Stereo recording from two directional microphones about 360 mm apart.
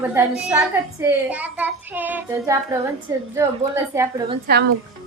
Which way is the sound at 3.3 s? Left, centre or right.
Centre.